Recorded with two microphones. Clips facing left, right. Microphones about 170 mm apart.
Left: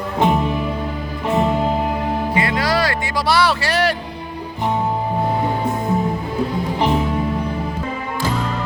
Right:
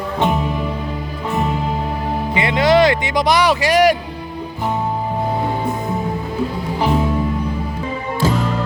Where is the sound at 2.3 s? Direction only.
20° right (ahead or behind).